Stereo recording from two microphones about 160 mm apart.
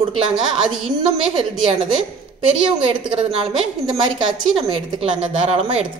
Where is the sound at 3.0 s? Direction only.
35° right (ahead or behind).